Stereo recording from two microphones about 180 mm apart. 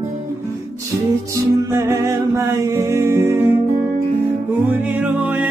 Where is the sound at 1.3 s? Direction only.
15° right (ahead or behind).